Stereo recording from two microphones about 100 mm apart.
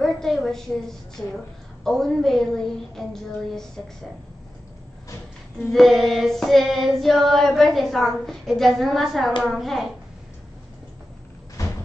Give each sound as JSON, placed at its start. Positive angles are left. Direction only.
{"t": 0.0, "sound": "a woman's voice", "side_deg": 5}
{"t": 1.9, "sound": "child singing", "side_deg": 5}
{"t": 5.6, "sound": "child singing", "side_deg": 5}
{"t": 11.6, "sound": "door", "side_deg": 35}